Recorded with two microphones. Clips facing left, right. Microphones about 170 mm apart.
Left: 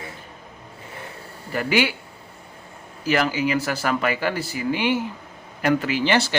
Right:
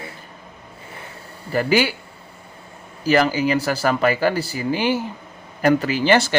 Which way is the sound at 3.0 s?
35° right (ahead or behind).